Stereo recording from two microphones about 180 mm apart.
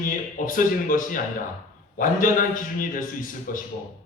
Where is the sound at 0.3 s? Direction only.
50° left (ahead or behind).